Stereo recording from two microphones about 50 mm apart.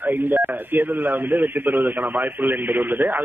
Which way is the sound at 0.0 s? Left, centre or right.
Right.